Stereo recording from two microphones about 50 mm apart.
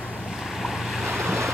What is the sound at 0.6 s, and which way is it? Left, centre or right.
Waves, centre.